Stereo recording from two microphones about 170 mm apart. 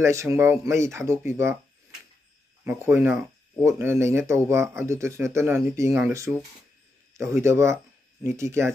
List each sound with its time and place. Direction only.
0.0 s speech: 15° right (ahead or behind)
2.6 s speech: 10° right (ahead or behind)